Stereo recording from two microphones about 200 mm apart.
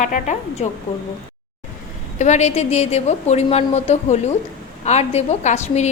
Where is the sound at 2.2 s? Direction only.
35° left (ahead or behind).